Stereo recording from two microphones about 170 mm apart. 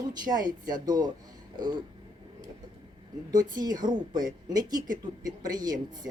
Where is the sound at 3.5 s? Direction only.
25° right (ahead or behind).